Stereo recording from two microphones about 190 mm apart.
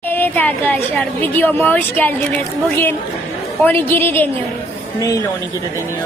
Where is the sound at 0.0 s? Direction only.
10° left (ahead or behind).